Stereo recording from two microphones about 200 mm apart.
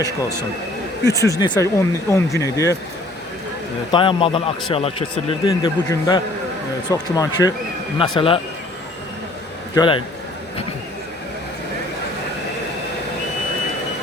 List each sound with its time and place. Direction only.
1.0 s speech: 15° left (ahead or behind)
3.9 s speech: 25° left (ahead or behind)
9.7 s speech: 25° left (ahead or behind)